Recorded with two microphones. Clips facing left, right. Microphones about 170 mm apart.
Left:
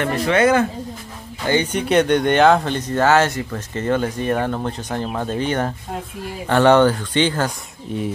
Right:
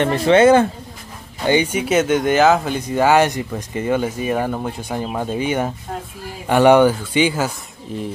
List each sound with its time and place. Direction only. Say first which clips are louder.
0.0 s speech: right 4 dB; 25° right (ahead or behind)
1.4 s speech: right 2 dB; 15° right (ahead or behind)